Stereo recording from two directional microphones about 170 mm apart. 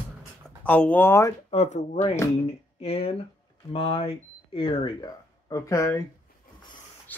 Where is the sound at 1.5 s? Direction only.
40° left (ahead or behind); by 6.0 s 20° left (ahead or behind).